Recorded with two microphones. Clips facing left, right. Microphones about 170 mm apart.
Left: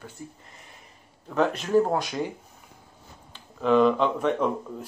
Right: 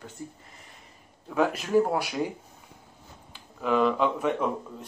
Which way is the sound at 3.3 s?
5° right (ahead or behind).